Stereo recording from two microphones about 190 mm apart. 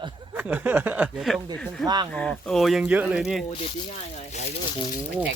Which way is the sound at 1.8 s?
20° right (ahead or behind).